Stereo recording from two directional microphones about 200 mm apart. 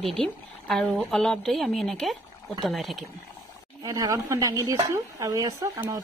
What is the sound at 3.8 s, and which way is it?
Speech, 20° right (ahead or behind).